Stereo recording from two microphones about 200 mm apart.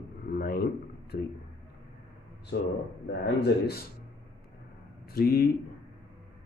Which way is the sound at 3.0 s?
55° left (ahead or behind).